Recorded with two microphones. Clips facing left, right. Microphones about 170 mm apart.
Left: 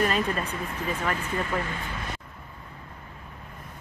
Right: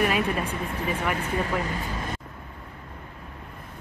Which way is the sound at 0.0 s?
10° right (ahead or behind).